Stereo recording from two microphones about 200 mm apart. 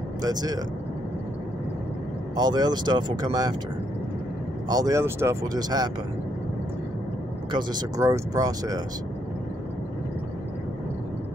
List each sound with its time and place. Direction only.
0.2 s speech: 20° right (ahead or behind)
2.3 s speech: 20° right (ahead or behind)
4.6 s speech: 20° right (ahead or behind)
7.5 s speech: 15° right (ahead or behind)